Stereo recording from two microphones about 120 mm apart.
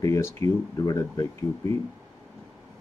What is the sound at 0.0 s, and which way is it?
Speech, 25° left (ahead or behind).